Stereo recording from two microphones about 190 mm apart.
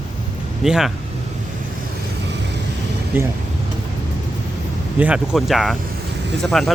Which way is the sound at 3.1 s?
10° right (ahead or behind).